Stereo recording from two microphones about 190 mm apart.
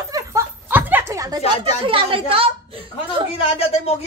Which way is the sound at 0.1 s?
15° right (ahead or behind).